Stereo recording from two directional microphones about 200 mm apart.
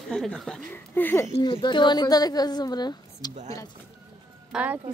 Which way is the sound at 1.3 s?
25° left (ahead or behind).